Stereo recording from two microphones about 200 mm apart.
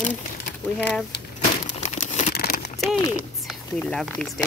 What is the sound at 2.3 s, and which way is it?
Crumpling, 50° left (ahead or behind).